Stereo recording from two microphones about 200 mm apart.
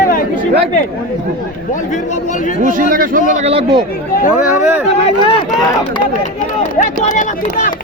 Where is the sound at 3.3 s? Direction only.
30° right (ahead or behind).